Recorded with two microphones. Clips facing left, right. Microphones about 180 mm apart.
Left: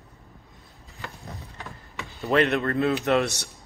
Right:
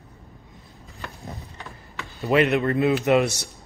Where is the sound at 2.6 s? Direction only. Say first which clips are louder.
Right 3 dB; 15° right (ahead or behind).